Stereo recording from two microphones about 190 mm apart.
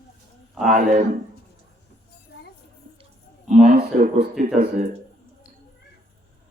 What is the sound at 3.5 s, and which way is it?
Speech, 45° right (ahead or behind).